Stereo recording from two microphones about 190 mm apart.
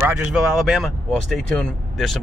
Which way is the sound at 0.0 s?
10° right (ahead or behind).